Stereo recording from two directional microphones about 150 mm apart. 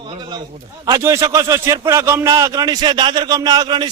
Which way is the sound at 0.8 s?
25° right (ahead or behind).